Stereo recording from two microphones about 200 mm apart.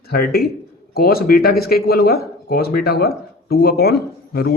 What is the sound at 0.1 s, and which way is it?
Speech, 50° left (ahead or behind).